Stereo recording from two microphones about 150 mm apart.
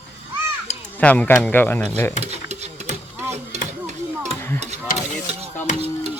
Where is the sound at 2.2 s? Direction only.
45° right (ahead or behind).